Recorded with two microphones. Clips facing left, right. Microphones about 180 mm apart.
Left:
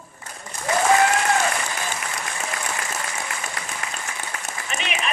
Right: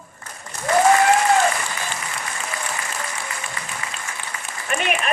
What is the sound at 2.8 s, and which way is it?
Applause, 60° left (ahead or behind).